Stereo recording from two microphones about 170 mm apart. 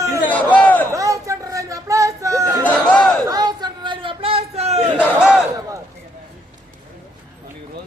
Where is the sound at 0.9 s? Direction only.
20° right (ahead or behind).